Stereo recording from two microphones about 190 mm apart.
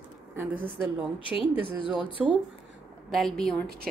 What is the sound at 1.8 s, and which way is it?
Speech, 25° left (ahead or behind).